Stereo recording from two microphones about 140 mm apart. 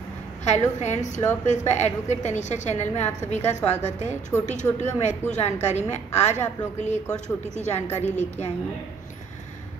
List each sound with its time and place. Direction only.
0.5 s a woman's voice: 55° left (ahead or behind)